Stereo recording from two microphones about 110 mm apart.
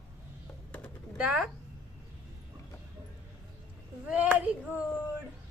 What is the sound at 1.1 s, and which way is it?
Speech, 10° right (ahead or behind).